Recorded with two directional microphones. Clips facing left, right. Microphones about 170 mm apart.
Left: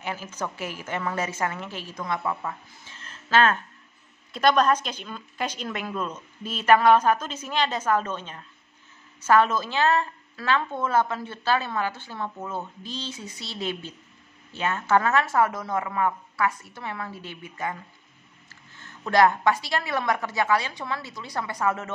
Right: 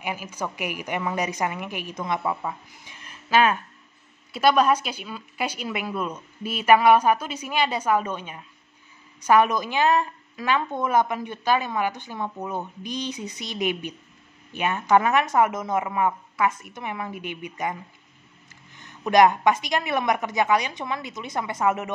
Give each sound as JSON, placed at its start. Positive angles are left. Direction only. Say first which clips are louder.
{"t": 0.0, "sound": "a woman's voice", "louder": "right 1 dB", "side_deg": -15}